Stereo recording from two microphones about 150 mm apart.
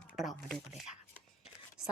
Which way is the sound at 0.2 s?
Centre (ahead or behind).